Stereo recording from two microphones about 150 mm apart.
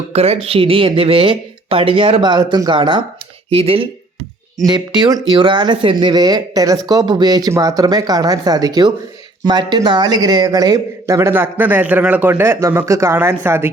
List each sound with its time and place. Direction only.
0.1 s speech: 45° right (ahead or behind)
3.5 s speech: 40° right (ahead or behind)
4.9 s speech: 25° right (ahead or behind)